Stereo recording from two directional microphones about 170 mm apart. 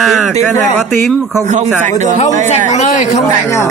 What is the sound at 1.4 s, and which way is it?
Speech, 45° right (ahead or behind).